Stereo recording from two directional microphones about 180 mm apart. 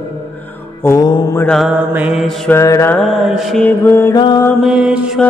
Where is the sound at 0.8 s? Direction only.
20° left (ahead or behind).